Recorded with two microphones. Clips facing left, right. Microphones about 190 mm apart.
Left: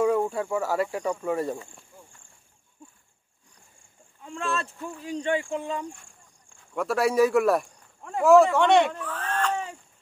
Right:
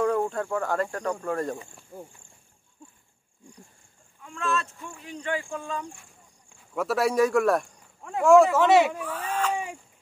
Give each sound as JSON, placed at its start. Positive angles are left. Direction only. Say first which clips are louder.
{"t": 0.0, "sound": "speech", "louder": "left 1 dB", "side_deg": 10}
{"t": 1.9, "sound": "speech", "louder": "right 13 dB", "side_deg": -50}
{"t": 4.2, "sound": "speech", "louder": "right 1 dB", "side_deg": 30}
{"t": 5.4, "sound": "speech", "louder": "left 3 dB", "side_deg": 20}
{"t": 6.7, "sound": "speech", "louder": "even", "side_deg": 0}